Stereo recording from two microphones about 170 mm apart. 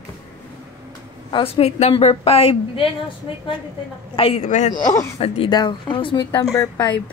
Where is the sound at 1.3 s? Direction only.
35° left (ahead or behind).